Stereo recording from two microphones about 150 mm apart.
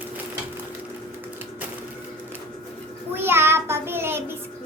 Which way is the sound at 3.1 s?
15° right (ahead or behind).